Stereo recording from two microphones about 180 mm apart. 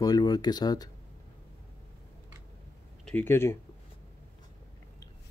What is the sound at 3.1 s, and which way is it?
Speech, 10° left (ahead or behind).